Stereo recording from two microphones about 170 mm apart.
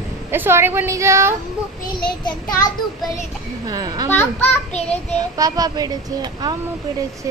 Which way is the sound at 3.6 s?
20° right (ahead or behind).